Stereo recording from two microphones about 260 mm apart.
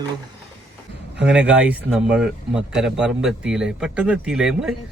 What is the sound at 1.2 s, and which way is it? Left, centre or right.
Speech, centre.